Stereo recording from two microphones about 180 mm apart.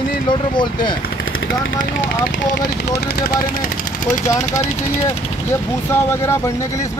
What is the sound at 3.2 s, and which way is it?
Speech, 55° left (ahead or behind).